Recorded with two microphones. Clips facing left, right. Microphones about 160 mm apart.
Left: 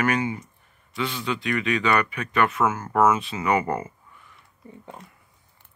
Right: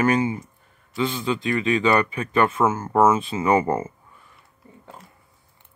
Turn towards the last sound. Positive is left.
turn(degrees=0)  # may be behind; listen again after turning